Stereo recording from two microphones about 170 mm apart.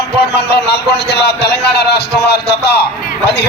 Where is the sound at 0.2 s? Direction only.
70° left (ahead or behind).